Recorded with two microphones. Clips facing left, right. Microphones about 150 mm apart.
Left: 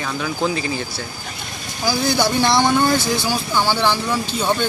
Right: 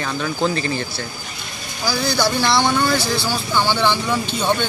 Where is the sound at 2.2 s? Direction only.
20° left (ahead or behind).